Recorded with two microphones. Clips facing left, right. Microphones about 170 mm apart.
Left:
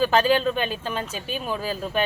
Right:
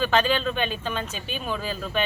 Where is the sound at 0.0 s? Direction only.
40° left (ahead or behind).